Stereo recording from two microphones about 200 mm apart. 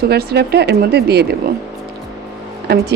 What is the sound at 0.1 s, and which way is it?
Speech, 50° right (ahead or behind).